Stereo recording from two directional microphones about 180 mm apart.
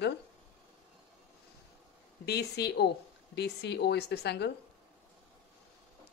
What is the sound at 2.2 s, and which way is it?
A woman's voice, 65° left (ahead or behind).